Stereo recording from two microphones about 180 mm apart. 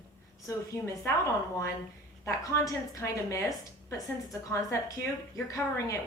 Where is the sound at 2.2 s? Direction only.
15° left (ahead or behind).